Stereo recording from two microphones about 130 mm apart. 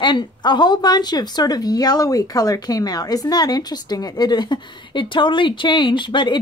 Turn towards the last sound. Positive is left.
turn(degrees=35)  # may be behind; listen again after turning